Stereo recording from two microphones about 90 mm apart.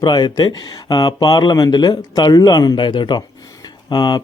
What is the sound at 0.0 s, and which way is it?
Speech, 50° left (ahead or behind).